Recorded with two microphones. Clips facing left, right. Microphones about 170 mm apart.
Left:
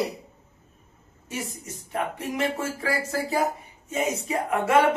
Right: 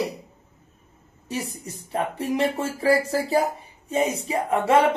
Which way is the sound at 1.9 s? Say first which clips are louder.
Right 4 dB; 30° right (ahead or behind).